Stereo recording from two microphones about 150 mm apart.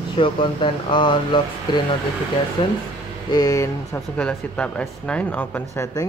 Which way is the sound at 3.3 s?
25° left (ahead or behind).